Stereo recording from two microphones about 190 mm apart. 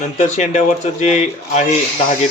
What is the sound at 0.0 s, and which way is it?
Speech, 35° left (ahead or behind).